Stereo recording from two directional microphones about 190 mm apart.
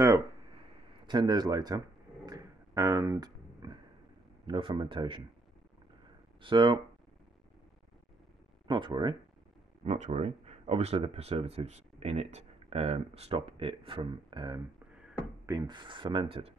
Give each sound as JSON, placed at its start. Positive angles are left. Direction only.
{"t": 1.0, "sound": "speech", "side_deg": -20}
{"t": 2.2, "sound": "a sound", "side_deg": -20}
{"t": 4.5, "sound": "speech", "side_deg": -25}
{"t": 6.4, "sound": "speech", "side_deg": -25}
{"t": 8.6, "sound": "speech", "side_deg": -25}
{"t": 9.8, "sound": "speech", "side_deg": -35}